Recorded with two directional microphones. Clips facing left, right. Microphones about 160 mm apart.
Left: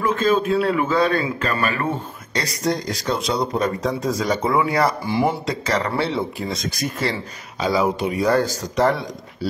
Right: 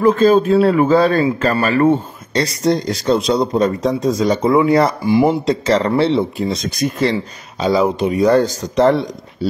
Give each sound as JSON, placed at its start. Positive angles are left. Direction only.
{"t": 0.0, "sound": "speech", "side_deg": -35}